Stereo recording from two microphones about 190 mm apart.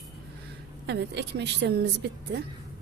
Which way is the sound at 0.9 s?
65° right (ahead or behind).